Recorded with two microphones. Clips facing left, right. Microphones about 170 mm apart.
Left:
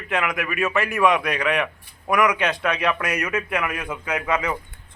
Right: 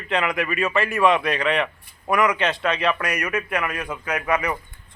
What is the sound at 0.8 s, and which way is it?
Speech, 15° left (ahead or behind).